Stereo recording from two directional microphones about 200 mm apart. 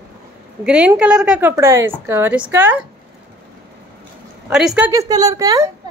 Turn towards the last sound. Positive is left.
turn(degrees=-15)  # may be behind; listen again after turning